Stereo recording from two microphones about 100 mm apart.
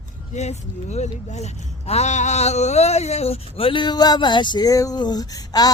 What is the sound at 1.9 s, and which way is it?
Speech, 90° left.